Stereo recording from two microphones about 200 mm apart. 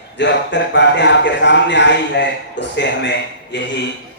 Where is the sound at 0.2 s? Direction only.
60° left (ahead or behind).